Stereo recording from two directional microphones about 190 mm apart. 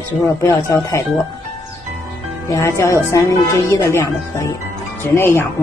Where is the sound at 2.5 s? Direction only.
15° left (ahead or behind).